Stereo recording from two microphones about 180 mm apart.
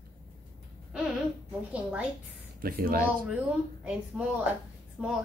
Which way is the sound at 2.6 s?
55° right (ahead or behind).